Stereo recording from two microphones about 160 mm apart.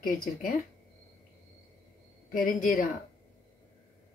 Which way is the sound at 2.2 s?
60° left (ahead or behind).